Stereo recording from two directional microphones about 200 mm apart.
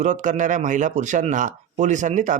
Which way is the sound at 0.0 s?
40° right (ahead or behind).